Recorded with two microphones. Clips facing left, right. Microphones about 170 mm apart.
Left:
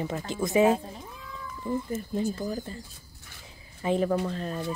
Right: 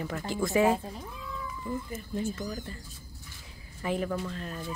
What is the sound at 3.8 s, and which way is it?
Speech, 25° left (ahead or behind).